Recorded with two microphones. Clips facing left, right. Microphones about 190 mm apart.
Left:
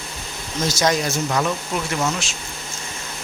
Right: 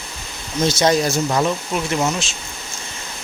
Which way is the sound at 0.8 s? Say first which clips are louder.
Right 3 dB; 30° right (ahead or behind).